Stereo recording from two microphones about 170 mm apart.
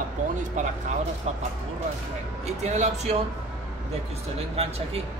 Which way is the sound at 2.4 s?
40° right (ahead or behind).